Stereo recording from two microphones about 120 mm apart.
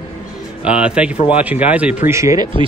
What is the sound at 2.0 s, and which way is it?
Speech, 25° right (ahead or behind).